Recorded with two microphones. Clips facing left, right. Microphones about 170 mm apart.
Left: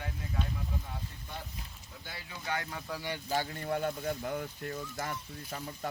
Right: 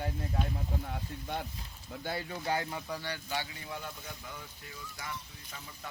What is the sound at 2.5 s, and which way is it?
Speech, 35° right (ahead or behind).